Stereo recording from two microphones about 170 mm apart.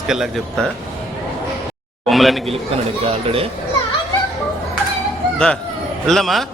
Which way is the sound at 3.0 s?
35° right (ahead or behind).